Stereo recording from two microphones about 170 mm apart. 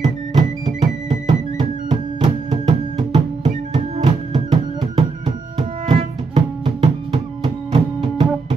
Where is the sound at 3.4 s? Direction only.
40° right (ahead or behind).